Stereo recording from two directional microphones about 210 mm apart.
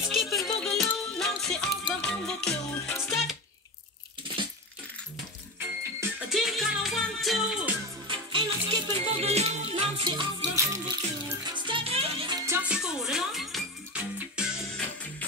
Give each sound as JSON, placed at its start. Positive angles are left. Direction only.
{"t": 0.1, "sound": "music", "side_deg": 0}
{"t": 6.2, "sound": "music", "side_deg": 0}
{"t": 8.3, "sound": "music", "side_deg": -20}
{"t": 12.4, "sound": "music", "side_deg": -5}